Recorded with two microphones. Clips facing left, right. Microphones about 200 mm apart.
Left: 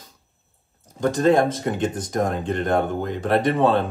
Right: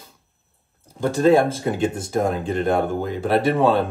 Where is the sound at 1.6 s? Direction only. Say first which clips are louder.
Right 2 dB; 5° right (ahead or behind).